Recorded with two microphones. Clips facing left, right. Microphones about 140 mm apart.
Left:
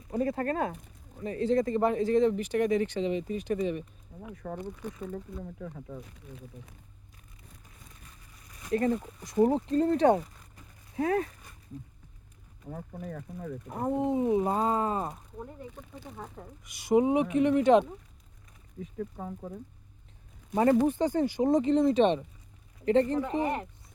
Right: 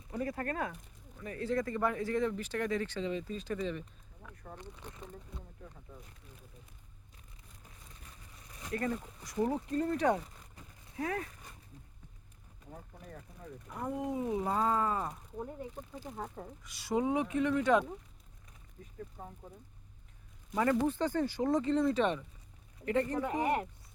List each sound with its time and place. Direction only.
0.1 s speech: 30° left (ahead or behind)
4.1 s a sound: 40° left (ahead or behind)
5.4 s speech: 90° left
8.7 s speech: 25° left (ahead or behind)
12.6 s speech: 90° left
13.7 s speech: 35° left (ahead or behind)
16.1 s speech: 10° right (ahead or behind)
16.6 s speech: 15° left (ahead or behind)
18.8 s speech: 90° left
20.5 s speech: 25° left (ahead or behind)
20.8 s speech: 15° left (ahead or behind)
23.4 s speech: 10° right (ahead or behind)